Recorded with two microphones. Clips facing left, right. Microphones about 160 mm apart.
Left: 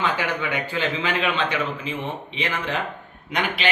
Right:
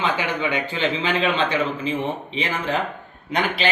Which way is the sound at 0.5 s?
25° right (ahead or behind).